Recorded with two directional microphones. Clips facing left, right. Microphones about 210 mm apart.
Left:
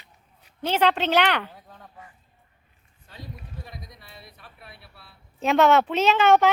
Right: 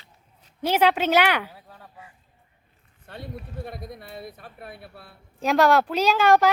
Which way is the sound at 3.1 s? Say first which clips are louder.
Right 5 dB; 60° right (ahead or behind).